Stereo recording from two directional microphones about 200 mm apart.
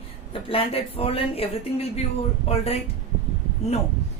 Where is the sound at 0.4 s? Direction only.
30° left (ahead or behind).